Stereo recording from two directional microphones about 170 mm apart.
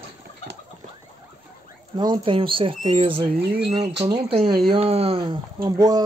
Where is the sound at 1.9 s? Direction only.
25° right (ahead or behind).